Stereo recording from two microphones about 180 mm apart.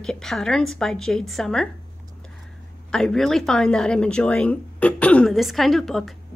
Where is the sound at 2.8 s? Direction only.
5° left (ahead or behind).